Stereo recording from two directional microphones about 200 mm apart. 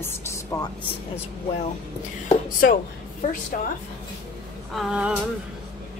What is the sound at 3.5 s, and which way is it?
Speech, 45° left (ahead or behind).